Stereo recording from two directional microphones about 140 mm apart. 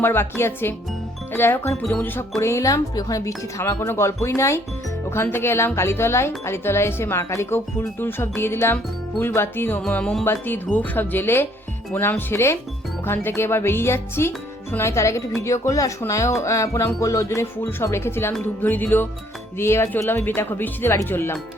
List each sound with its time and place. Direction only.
0.0 s speech: 15° left (ahead or behind)
2.4 s speech: 20° left (ahead or behind)